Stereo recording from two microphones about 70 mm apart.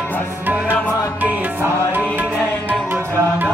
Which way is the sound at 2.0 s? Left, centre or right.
Right.